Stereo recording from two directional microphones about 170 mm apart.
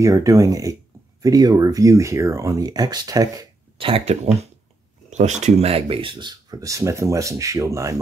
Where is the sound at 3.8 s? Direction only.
35° right (ahead or behind).